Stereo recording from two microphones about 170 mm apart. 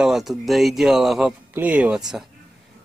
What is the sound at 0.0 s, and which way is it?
Speech, centre (ahead or behind).